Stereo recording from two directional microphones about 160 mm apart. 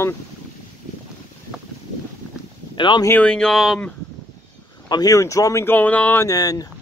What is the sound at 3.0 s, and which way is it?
Speech, 10° left (ahead or behind).